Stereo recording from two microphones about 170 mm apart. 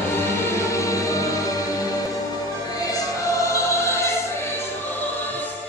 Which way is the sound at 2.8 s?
20° left (ahead or behind).